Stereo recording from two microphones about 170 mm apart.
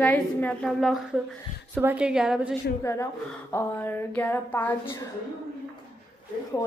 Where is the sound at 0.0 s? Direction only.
10° left (ahead or behind).